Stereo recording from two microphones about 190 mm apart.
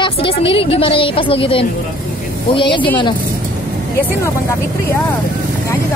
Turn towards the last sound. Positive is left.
turn(degrees=15)  # may be behind; listen again after turning